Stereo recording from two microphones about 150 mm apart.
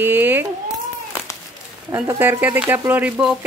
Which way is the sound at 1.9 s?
15° right (ahead or behind).